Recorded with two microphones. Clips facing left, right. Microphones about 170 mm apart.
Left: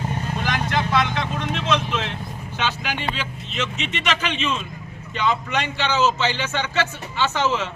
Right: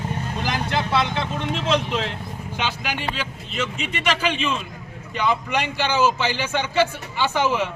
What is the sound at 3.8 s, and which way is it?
A man's voice, 10° right (ahead or behind).